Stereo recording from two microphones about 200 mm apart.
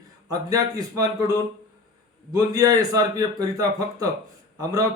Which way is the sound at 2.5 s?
20° right (ahead or behind).